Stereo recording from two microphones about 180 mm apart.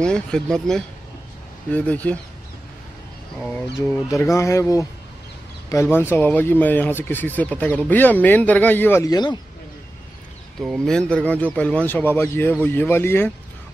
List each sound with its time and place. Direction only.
0.0 s speech: 5° left (ahead or behind)
3.3 s speech: 5° left (ahead or behind); by 9.4 s 25° left (ahead or behind)
10.6 s speech: centre (ahead or behind)